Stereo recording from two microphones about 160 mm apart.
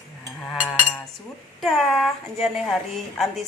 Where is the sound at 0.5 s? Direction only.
Centre (ahead or behind).